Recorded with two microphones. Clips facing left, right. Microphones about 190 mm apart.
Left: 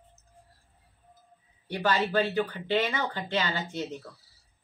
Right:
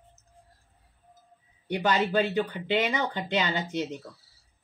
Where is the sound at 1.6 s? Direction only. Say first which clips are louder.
Right 2 dB; 20° right (ahead or behind).